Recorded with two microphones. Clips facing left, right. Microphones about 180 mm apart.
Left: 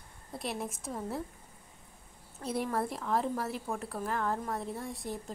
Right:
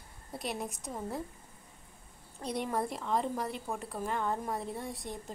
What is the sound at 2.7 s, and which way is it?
A woman's voice, centre (ahead or behind).